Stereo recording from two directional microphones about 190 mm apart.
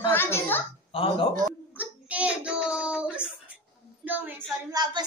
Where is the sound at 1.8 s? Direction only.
5° right (ahead or behind).